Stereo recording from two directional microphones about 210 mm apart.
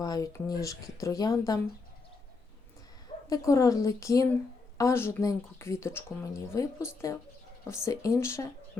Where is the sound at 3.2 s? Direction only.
15° left (ahead or behind).